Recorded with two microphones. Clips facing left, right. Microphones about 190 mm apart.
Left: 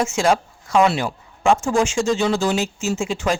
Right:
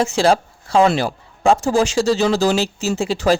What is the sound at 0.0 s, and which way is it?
Speech, 35° right (ahead or behind).